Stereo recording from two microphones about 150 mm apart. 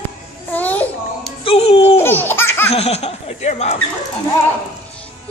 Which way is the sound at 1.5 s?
40° left (ahead or behind).